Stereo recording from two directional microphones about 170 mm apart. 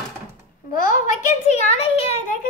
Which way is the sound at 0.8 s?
45° left (ahead or behind).